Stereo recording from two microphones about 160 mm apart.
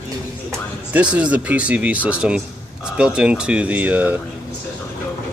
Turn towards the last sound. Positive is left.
turn(degrees=-10)  # may be behind; listen again after turning